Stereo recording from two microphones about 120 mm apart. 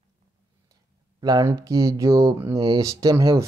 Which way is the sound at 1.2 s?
30° right (ahead or behind).